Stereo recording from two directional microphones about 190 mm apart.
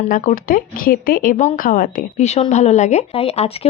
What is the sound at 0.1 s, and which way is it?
Speech, 45° left (ahead or behind).